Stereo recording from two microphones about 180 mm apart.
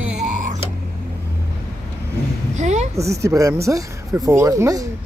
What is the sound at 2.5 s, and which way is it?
Speech, 40° right (ahead or behind).